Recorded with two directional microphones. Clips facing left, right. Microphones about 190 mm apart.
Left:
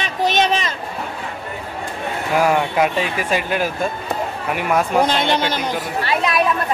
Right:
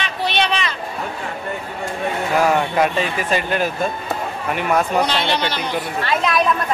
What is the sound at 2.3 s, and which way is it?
Speech, 10° left (ahead or behind).